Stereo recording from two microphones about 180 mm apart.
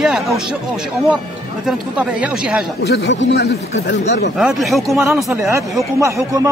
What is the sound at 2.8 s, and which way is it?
Speech, 70° left (ahead or behind).